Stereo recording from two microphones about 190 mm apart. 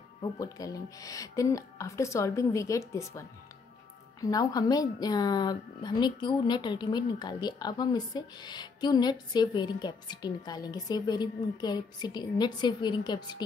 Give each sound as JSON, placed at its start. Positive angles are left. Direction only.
{"t": 0.2, "sound": "a woman's voice", "side_deg": 20}